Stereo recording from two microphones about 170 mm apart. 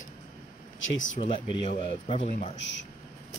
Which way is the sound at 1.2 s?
30° left (ahead or behind).